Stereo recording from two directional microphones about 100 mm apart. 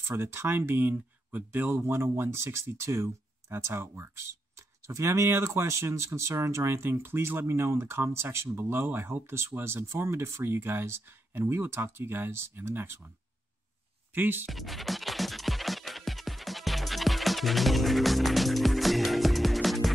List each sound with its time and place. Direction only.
0.1 s speech: 25° right (ahead or behind)
14.1 s speech: 20° right (ahead or behind)
14.5 s music: centre (ahead or behind)